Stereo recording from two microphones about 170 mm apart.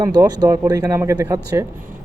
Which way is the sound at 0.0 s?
20° right (ahead or behind).